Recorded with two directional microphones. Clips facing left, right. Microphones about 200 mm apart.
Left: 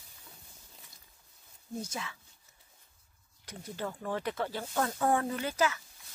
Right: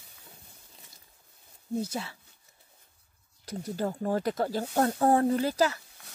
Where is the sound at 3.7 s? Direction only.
40° right (ahead or behind).